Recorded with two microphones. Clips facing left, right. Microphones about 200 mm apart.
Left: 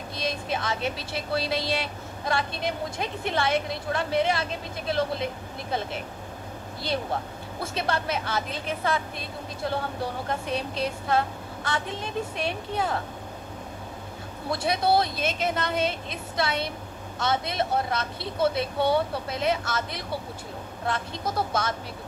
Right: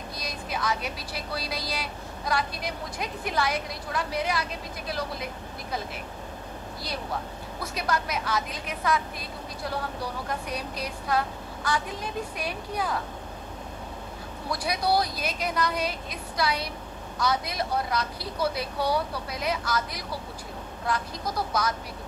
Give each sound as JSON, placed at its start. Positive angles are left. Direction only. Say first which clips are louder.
{"t": 0.2, "sound": "speech", "louder": "left 4 dB", "side_deg": 25}
{"t": 14.5, "sound": "speech", "louder": "left 3 dB", "side_deg": 25}